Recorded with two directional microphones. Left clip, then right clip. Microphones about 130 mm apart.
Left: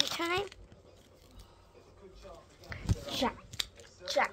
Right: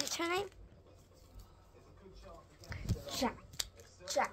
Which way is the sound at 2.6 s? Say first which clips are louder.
Left 5 dB; centre (ahead or behind).